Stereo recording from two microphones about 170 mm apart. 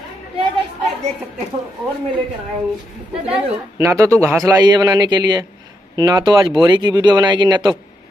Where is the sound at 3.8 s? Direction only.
15° right (ahead or behind).